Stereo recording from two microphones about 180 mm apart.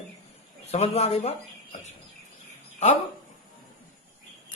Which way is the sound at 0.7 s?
35° left (ahead or behind).